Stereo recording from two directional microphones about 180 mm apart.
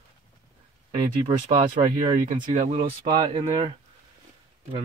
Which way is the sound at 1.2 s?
40° right (ahead or behind).